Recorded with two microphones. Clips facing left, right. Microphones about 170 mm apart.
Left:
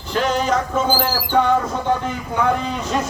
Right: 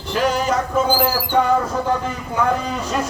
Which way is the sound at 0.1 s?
5° right (ahead or behind).